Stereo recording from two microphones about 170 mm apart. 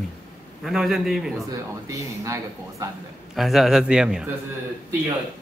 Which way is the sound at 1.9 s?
20° right (ahead or behind).